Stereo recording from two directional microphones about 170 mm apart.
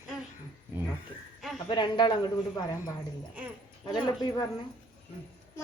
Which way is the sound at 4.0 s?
20° left (ahead or behind).